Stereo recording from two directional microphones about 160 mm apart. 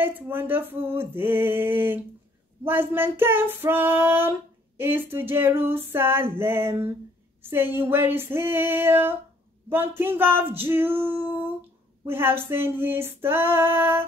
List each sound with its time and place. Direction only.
0.0 s female singing: 10° right (ahead or behind)